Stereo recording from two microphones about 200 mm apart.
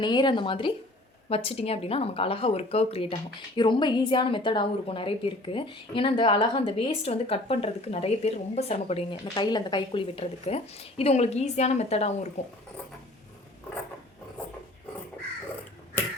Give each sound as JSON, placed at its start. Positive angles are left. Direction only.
{"t": 0.0, "sound": "speech", "side_deg": 20}